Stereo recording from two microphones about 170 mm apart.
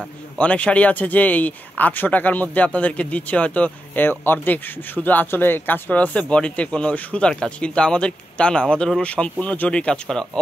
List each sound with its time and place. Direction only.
0.4 s speech: 5° left (ahead or behind)